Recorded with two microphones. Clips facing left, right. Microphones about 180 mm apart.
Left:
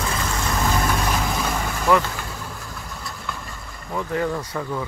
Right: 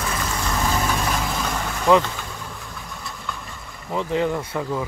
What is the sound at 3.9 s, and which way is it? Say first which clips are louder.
Speech: right 2 dB; 20° right (ahead or behind).